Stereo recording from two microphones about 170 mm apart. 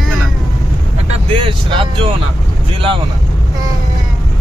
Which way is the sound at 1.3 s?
30° right (ahead or behind).